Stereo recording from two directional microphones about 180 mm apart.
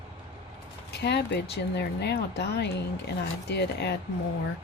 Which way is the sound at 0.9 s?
70° left (ahead or behind).